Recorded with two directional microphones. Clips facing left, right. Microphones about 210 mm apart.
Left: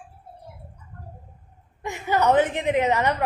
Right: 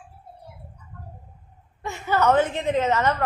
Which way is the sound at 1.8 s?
15° left (ahead or behind).